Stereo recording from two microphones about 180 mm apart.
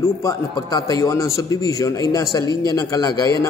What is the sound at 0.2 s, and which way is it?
A man's voice, 20° left (ahead or behind).